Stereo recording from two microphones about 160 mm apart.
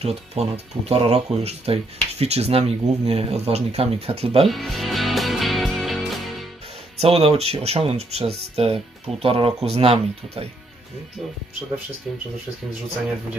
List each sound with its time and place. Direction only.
0.0 s speech: 40° right (ahead or behind)
4.5 s music: centre (ahead or behind)
7.0 s speech: 40° right (ahead or behind)